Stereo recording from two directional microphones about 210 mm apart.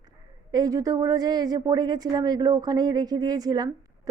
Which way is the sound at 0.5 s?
15° right (ahead or behind).